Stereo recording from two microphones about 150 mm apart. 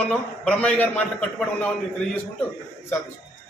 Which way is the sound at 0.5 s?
5° left (ahead or behind).